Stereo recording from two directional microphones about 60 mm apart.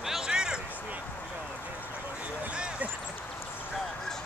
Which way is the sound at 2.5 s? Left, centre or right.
Centre.